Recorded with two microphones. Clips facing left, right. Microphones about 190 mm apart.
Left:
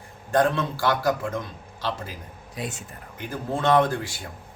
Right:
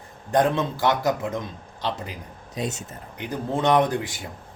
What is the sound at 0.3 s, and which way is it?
Speech, 20° right (ahead or behind).